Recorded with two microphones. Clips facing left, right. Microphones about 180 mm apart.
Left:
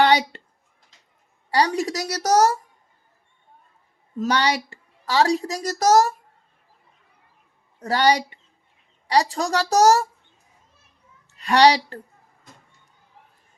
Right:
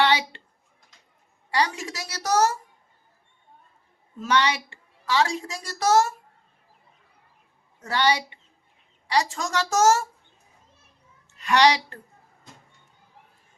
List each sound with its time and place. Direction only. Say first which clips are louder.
0.0 s a sound: left 4 dB; 40° left (ahead or behind)
1.5 s a woman's voice: left 5 dB; 40° left (ahead or behind)
4.2 s a woman's voice: left 2 dB; 35° left (ahead or behind)
7.8 s a woman's voice: left 4 dB; 40° left (ahead or behind)
11.3 s a woman's voice: left 4 dB; 35° left (ahead or behind)